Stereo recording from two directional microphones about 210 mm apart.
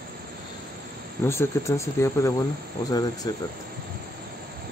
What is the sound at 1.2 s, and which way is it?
Speech, 15° left (ahead or behind).